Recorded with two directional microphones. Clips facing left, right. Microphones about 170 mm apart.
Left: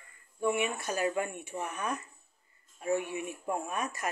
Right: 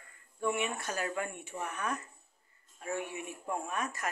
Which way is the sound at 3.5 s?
10° left (ahead or behind).